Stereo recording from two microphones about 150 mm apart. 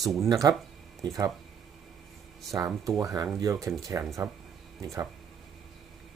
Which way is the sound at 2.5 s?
20° right (ahead or behind).